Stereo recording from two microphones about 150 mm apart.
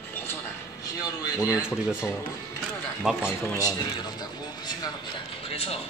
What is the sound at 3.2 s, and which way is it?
Speech, 20° left (ahead or behind).